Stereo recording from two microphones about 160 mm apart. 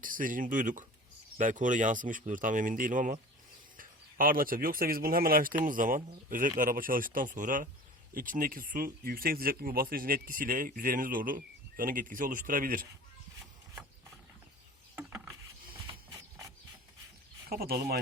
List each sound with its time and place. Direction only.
0.0 s speech: 60° right (ahead or behind)
14.9 s mechanisms: 15° right (ahead or behind)
15.9 s printer: 20° right (ahead or behind)
17.5 s speech: 75° right (ahead or behind)